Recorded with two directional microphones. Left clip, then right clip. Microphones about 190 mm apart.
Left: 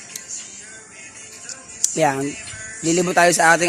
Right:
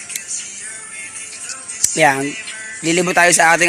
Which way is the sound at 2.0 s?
5° right (ahead or behind).